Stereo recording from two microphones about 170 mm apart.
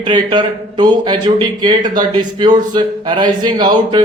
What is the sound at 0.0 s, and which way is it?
Speech, 25° right (ahead or behind).